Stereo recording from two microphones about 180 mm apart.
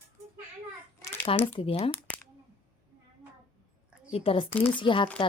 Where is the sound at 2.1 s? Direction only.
10° left (ahead or behind).